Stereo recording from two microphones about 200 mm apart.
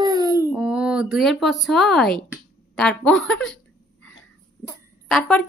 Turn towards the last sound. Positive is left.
turn(degrees=5)  # may be behind; listen again after turning